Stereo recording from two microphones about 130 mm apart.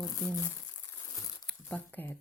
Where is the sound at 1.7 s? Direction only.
15° left (ahead or behind).